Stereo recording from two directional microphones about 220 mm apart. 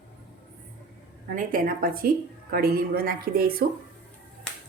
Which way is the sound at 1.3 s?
40° right (ahead or behind).